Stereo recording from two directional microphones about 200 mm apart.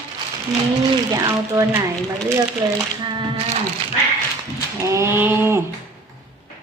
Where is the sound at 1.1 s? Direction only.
15° right (ahead or behind).